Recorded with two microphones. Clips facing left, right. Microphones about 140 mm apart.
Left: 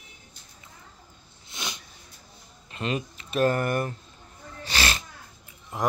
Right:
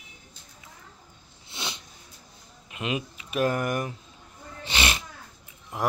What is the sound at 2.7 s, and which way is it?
Speech, 10° right (ahead or behind).